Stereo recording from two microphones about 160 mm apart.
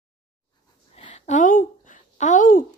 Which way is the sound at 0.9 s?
45° left (ahead or behind).